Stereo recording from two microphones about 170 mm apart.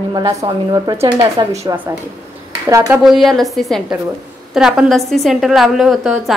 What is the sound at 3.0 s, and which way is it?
A woman's voice, centre (ahead or behind).